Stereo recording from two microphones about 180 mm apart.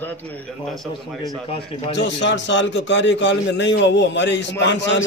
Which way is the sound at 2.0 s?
80° left.